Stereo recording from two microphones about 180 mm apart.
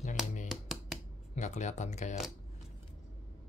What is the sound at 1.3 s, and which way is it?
Speech, 40° left (ahead or behind).